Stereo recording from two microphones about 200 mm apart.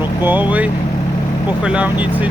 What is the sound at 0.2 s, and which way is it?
Speech, 10° right (ahead or behind).